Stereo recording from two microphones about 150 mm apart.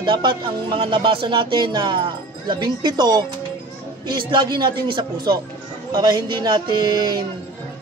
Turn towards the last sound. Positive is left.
turn(degrees=-25)  # may be behind; listen again after turning